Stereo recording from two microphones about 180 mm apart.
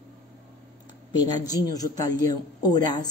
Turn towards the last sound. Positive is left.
turn(degrees=20)  # may be behind; listen again after turning